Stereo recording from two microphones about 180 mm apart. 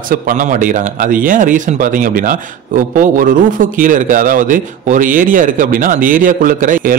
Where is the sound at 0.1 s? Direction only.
45° right (ahead or behind).